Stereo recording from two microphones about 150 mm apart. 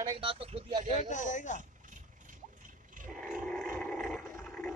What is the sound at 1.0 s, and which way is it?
Speech, 55° left (ahead or behind).